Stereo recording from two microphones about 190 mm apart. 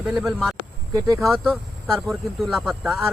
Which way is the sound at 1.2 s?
Centre (ahead or behind).